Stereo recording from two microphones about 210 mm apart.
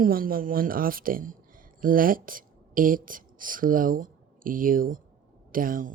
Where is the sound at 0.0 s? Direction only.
45° right (ahead or behind).